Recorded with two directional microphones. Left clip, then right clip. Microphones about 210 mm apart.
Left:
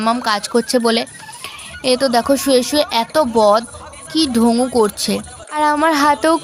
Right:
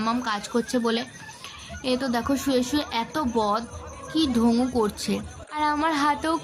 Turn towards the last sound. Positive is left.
turn(degrees=45)  # may be behind; listen again after turning